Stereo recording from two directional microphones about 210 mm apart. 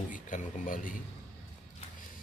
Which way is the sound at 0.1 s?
40° left (ahead or behind).